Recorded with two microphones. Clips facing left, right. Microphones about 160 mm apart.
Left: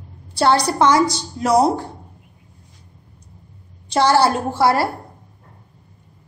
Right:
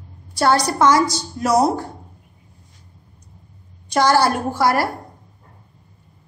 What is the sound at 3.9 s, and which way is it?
A woman's voice, 30° left (ahead or behind).